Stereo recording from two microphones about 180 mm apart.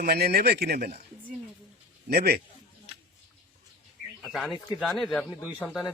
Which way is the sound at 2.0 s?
60° right (ahead or behind).